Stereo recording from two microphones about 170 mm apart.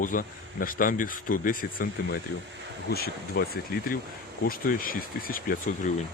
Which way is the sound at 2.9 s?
65° left (ahead or behind).